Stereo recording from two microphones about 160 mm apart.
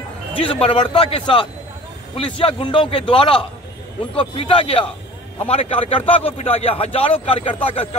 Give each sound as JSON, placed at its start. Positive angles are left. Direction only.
{"t": 0.3, "sound": "a man's voice", "side_deg": 35}